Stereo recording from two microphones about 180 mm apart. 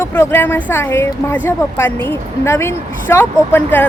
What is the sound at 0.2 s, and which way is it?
A woman's voice, 10° left (ahead or behind).